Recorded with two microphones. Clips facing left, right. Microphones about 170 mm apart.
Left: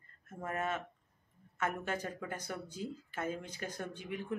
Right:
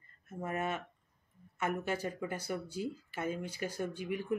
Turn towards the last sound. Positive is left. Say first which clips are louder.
# right 4 dB
turn(degrees=-10)  # may be behind; listen again after turning